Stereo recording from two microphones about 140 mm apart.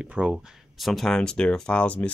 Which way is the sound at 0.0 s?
10° right (ahead or behind).